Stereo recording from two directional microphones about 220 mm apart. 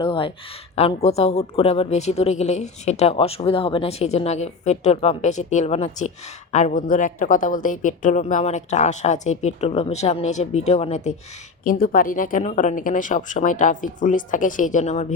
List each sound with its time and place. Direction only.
0.0 s speech: 25° left (ahead or behind)
11.6 s speech: 40° left (ahead or behind)